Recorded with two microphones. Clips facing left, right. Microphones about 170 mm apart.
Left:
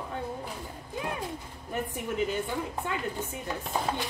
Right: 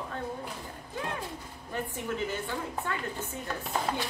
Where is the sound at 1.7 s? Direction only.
15° left (ahead or behind).